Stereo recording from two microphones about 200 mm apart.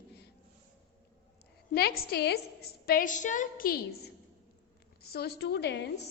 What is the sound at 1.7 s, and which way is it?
A woman's voice, 50° left (ahead or behind).